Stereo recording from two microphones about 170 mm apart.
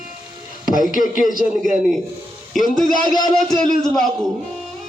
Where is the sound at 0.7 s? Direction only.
50° left (ahead or behind).